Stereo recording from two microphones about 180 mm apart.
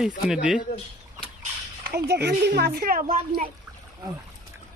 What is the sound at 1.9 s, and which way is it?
Speech, 65° right (ahead or behind).